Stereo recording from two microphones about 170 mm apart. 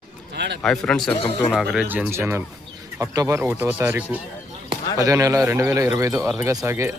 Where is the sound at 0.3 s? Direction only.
85° right.